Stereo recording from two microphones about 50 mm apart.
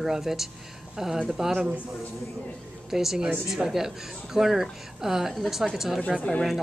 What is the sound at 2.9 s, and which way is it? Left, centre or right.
Speech, centre.